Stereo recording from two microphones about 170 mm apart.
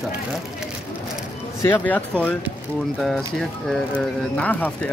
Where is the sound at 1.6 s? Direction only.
10° left (ahead or behind).